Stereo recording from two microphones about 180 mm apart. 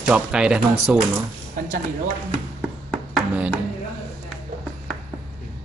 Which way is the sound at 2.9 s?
5° right (ahead or behind).